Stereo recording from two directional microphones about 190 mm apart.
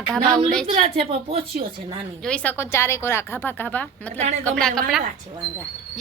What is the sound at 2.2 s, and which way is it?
A woman's voice, 5° left (ahead or behind).